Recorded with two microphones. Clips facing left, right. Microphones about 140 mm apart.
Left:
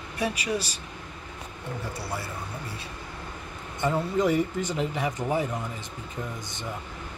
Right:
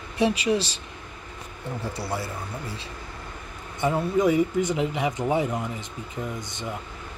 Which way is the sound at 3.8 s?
10° right (ahead or behind).